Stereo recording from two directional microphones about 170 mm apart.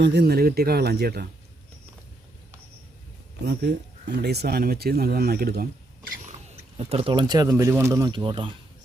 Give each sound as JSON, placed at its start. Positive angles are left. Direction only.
{"t": 0.0, "sound": "speech", "side_deg": -80}
{"t": 3.4, "sound": "speech", "side_deg": -70}
{"t": 6.5, "sound": "speech", "side_deg": -35}